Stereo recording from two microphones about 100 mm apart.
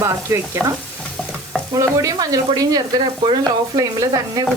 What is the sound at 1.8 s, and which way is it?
Speech, 35° right (ahead or behind).